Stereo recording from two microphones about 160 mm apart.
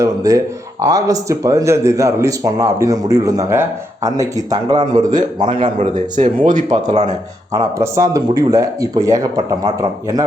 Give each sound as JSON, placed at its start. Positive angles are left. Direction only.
{"t": 0.0, "sound": "speech", "side_deg": -20}
{"t": 5.6, "sound": "speech", "side_deg": -50}
{"t": 7.5, "sound": "speech", "side_deg": -20}